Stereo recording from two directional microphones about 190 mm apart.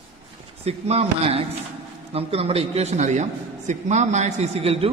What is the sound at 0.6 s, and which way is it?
A man's voice, 35° right (ahead or behind).